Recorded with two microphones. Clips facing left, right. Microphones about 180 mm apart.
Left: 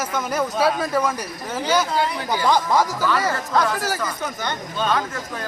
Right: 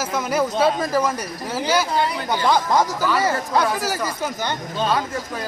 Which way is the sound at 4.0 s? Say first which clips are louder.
Right 2 dB; 30° right (ahead or behind).